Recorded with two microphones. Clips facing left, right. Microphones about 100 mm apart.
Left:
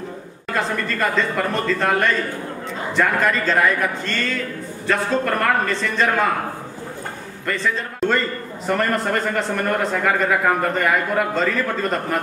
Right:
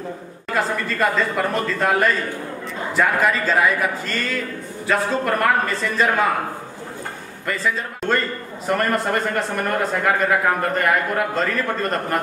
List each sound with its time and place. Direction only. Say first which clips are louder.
0.6 s speech: right 1 dB; 5° right (ahead or behind)
7.4 s speech: even; 5° right (ahead or behind)